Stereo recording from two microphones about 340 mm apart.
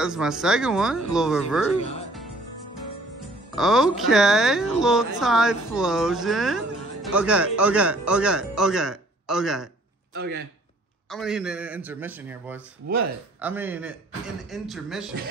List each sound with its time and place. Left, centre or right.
0.0 s speech: centre
3.5 s speech: centre
10.1 s a man's voice: right
11.1 s speech: centre